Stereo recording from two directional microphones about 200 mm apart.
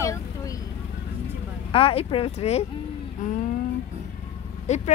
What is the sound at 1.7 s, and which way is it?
Speech, 30° left (ahead or behind).